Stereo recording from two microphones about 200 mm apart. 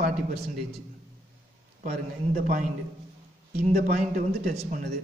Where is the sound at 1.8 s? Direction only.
40° right (ahead or behind).